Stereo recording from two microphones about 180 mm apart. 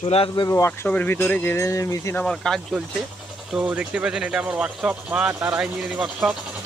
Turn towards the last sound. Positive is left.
turn(degrees=-5)  # may be behind; listen again after turning